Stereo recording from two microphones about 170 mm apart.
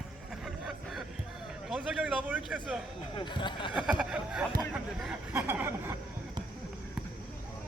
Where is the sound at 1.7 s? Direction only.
5° right (ahead or behind).